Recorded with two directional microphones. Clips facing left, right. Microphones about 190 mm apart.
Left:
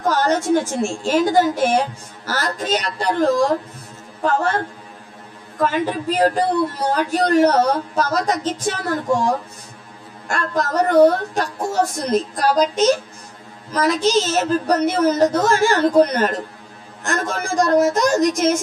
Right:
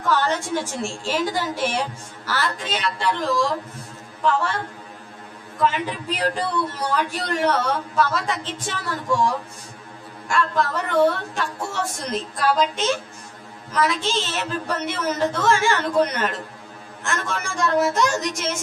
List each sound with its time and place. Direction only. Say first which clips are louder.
0.0 s a man's voice: left 4 dB; 40° left (ahead or behind)